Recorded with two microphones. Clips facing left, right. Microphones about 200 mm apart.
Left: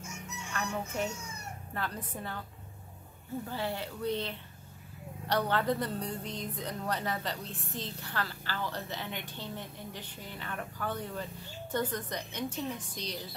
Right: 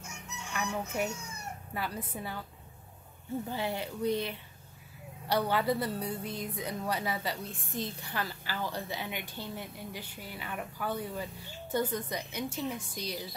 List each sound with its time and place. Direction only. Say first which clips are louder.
0.5 s chicken: right 1 dB; 10° right (ahead or behind)
1.7 s a woman's voice: right 1 dB; 10° right (ahead or behind)
3.4 s a woman's voice: even; 15° right (ahead or behind)